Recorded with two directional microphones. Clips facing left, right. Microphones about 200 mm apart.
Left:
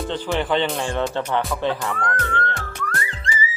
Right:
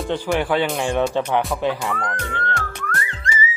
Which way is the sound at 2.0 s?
15° right (ahead or behind).